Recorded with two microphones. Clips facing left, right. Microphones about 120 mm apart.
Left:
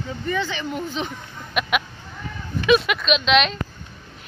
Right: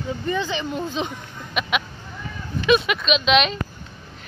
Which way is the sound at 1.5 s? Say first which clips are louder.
Left 1 dB; 5° left (ahead or behind).